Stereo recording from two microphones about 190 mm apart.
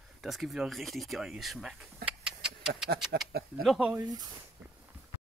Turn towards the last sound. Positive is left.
turn(degrees=-20)  # may be behind; listen again after turning